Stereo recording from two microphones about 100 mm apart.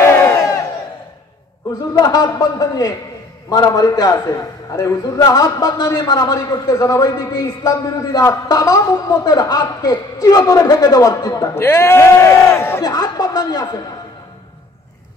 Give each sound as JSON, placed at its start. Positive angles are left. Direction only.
{"t": 0.0, "sound": "crowd", "side_deg": 25}
{"t": 2.0, "sound": "a man's voice", "side_deg": 40}
{"t": 11.5, "sound": "speech", "side_deg": 25}
{"t": 12.8, "sound": "speech", "side_deg": 40}